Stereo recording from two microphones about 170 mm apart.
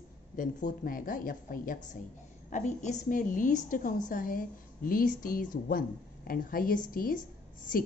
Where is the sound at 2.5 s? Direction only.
45° left (ahead or behind).